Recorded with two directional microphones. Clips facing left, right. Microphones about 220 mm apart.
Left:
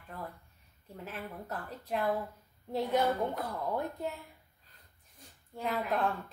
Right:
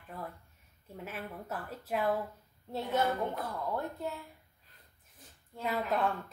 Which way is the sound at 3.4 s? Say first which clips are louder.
Left 1 dB; 15° left (ahead or behind).